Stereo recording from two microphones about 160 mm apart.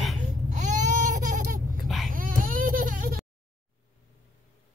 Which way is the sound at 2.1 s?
60° right (ahead or behind).